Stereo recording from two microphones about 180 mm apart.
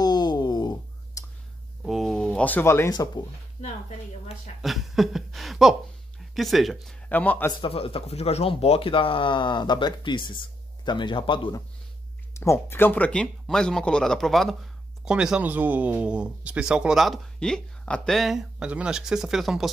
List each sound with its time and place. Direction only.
0.0 s a sound: 25° left (ahead or behind)
1.9 s speech: centre (ahead or behind); by 3.3 s 20° left (ahead or behind)
4.6 s speech: centre (ahead or behind)
7.6 s speech: 30° left (ahead or behind)
12.4 s speech: 15° left (ahead or behind)